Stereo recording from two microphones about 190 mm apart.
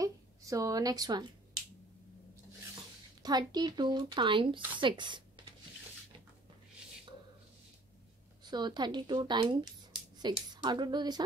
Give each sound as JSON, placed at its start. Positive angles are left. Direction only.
{"t": 0.0, "sound": "a sound", "side_deg": -15}
{"t": 3.2, "sound": "speech", "side_deg": -20}
{"t": 8.5, "sound": "speech", "side_deg": -25}